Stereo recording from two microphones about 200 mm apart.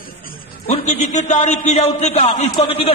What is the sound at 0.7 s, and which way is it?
A man's voice, 35° left (ahead or behind).